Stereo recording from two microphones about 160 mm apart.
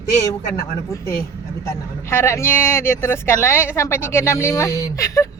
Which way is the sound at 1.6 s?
20° left (ahead or behind).